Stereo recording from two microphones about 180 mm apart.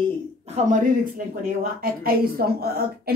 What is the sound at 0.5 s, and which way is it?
Speech, 45° right (ahead or behind).